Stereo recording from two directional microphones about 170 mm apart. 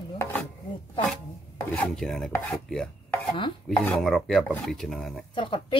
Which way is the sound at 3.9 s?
Centre (ahead or behind).